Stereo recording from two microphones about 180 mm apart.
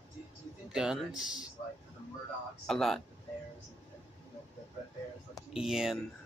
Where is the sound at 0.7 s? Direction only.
5° right (ahead or behind).